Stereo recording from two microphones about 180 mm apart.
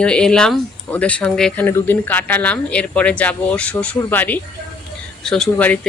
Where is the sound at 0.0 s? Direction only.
5° left (ahead or behind).